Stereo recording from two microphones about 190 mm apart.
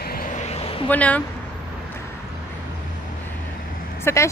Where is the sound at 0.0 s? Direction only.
50° left (ahead or behind); by 0.8 s 30° left (ahead or behind).